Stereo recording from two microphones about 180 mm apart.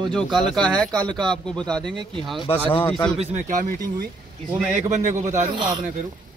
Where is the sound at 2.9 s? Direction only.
5° left (ahead or behind).